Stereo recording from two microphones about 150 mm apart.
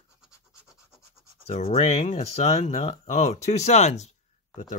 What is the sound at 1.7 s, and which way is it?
Speech, 50° left (ahead or behind).